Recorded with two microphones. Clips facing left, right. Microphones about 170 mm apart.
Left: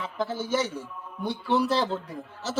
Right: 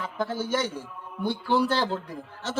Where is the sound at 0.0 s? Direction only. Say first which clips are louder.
Right 1 dB; centre (ahead or behind).